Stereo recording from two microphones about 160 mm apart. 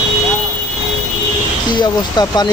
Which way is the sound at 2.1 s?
25° left (ahead or behind).